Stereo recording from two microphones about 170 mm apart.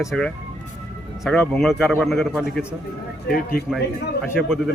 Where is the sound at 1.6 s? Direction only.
Centre (ahead or behind).